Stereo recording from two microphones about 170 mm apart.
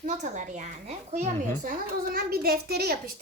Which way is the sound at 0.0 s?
45° right (ahead or behind).